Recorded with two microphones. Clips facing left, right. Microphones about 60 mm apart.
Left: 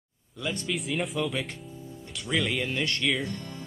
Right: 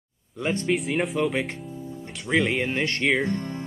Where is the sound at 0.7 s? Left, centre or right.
Centre.